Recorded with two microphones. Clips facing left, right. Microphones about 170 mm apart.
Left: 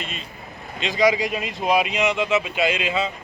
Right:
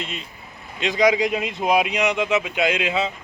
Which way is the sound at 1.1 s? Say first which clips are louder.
Right 3 dB; 75° right (ahead or behind).